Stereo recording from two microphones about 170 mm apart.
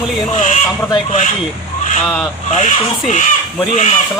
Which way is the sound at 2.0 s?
Centre (ahead or behind).